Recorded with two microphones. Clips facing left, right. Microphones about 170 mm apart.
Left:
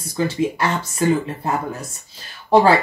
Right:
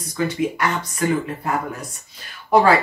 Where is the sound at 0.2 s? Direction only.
30° left (ahead or behind).